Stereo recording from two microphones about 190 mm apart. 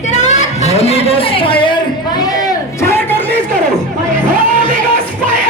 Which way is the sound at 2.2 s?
15° left (ahead or behind).